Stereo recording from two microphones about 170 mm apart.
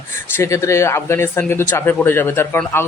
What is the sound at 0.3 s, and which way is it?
Speech, 15° left (ahead or behind).